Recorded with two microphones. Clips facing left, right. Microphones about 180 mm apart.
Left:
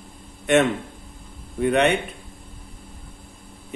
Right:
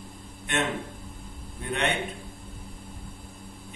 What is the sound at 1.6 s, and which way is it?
Speech, 70° left (ahead or behind).